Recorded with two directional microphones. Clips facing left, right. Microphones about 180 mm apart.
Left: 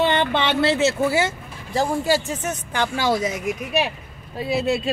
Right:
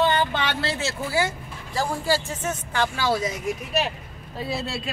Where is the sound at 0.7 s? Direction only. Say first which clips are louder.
Left 6 dB; 20° left (ahead or behind).